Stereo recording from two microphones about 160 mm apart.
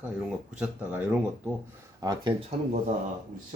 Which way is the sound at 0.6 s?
10° right (ahead or behind).